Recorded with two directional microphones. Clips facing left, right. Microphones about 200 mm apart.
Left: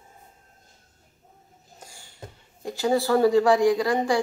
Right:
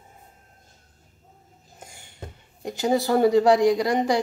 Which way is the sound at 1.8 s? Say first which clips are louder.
Right 2 dB; 20° right (ahead or behind).